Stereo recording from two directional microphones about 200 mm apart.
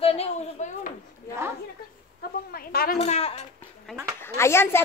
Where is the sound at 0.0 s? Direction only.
30° left (ahead or behind).